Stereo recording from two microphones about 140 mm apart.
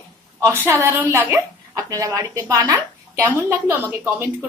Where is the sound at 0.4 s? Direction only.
20° right (ahead or behind).